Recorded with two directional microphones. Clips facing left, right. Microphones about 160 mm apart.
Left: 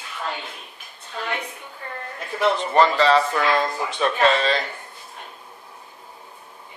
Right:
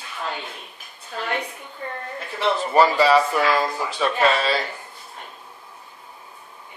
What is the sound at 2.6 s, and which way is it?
Speech, 10° right (ahead or behind).